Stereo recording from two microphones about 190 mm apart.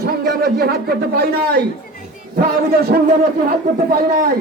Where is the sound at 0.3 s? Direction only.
55° right (ahead or behind).